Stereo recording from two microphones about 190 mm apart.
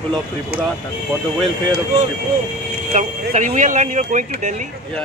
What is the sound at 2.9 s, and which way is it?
Speech, 40° right (ahead or behind).